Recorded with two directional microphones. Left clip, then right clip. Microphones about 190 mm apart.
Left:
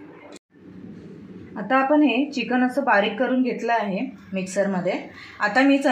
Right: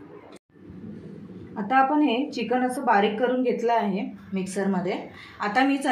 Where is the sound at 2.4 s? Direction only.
15° left (ahead or behind).